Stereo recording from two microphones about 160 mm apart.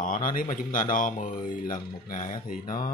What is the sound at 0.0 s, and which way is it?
Speech, 60° left (ahead or behind).